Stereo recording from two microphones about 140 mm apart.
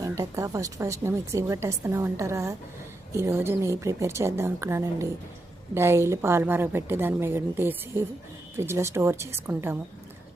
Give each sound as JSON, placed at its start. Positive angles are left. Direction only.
{"t": 0.0, "sound": "a woman's voice", "side_deg": -25}